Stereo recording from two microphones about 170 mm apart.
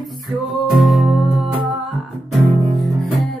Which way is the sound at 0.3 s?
Centre (ahead or behind).